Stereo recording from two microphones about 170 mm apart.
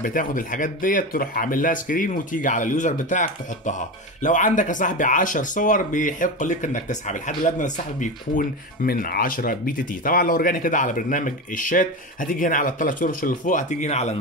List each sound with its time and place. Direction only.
0.0 s speech: 55° left (ahead or behind)